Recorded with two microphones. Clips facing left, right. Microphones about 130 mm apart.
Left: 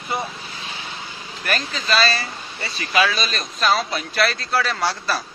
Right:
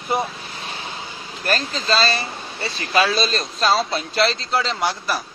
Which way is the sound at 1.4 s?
35° right (ahead or behind).